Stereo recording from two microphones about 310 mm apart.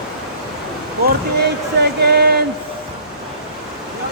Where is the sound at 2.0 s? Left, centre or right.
Right.